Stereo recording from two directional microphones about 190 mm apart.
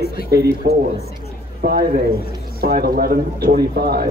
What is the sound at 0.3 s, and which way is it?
A man's voice, 55° right (ahead or behind).